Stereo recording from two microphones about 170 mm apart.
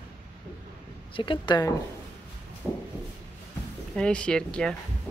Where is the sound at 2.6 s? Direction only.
5° right (ahead or behind).